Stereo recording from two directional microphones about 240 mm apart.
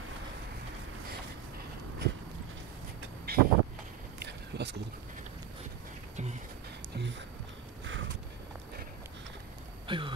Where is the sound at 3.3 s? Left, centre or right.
Right.